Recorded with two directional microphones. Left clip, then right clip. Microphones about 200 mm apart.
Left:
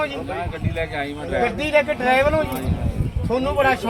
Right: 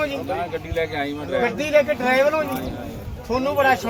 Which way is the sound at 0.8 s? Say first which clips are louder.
Right 1 dB; 15° left (ahead or behind).